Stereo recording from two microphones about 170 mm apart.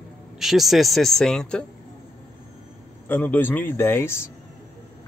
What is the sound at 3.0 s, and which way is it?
Speech, 10° left (ahead or behind).